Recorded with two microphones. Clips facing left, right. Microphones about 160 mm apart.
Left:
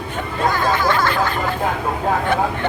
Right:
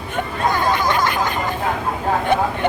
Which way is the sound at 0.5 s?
20° right (ahead or behind).